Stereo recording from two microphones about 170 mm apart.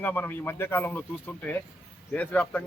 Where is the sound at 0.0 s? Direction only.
10° left (ahead or behind).